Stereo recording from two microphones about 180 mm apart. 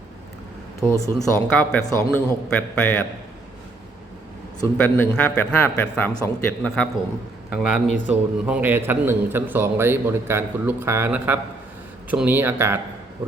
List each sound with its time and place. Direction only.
0.9 s a man's voice: 15° left (ahead or behind)
4.6 s a man's voice: 10° left (ahead or behind); by 12.8 s 10° right (ahead or behind)